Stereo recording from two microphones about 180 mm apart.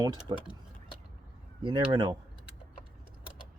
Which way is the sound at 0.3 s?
25° right (ahead or behind).